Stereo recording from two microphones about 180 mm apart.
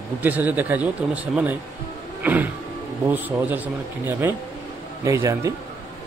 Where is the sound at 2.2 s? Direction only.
10° right (ahead or behind).